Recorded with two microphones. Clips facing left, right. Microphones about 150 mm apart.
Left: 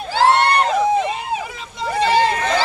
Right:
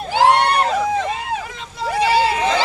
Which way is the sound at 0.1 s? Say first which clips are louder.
Even; 15° right (ahead or behind).